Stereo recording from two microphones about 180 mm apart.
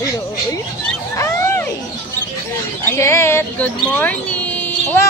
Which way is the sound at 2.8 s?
15° left (ahead or behind).